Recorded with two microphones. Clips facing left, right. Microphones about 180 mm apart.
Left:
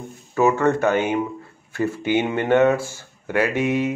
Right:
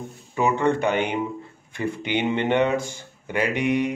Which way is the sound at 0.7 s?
5° left (ahead or behind).